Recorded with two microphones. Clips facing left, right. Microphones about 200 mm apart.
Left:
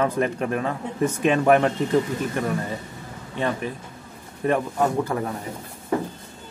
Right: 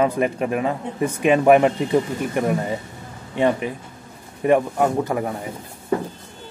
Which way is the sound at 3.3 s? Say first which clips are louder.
Right 6 dB; 15° right (ahead or behind).